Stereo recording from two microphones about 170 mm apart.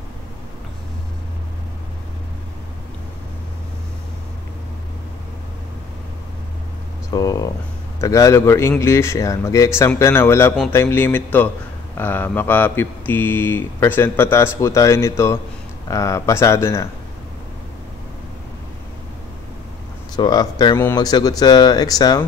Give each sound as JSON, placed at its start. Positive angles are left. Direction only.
{"t": 7.1, "sound": "speech", "side_deg": 20}
{"t": 20.2, "sound": "speech", "side_deg": 25}